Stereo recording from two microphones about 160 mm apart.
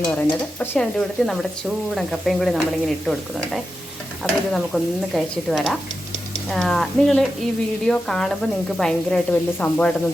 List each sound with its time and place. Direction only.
0.2 s sizzle: 10° left (ahead or behind)